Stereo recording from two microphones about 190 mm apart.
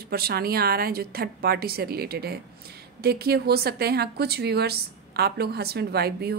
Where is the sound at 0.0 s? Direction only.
55° right (ahead or behind).